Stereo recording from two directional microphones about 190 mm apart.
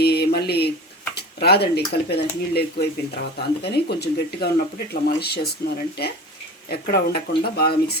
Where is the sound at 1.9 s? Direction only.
60° left (ahead or behind).